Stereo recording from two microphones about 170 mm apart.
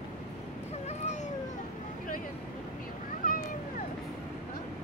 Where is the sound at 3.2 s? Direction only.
55° left (ahead or behind).